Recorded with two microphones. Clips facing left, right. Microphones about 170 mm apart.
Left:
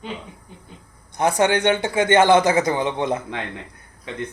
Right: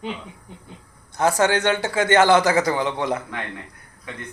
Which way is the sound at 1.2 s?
20° left (ahead or behind).